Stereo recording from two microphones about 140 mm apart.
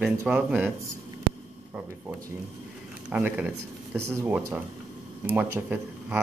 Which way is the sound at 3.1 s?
10° right (ahead or behind).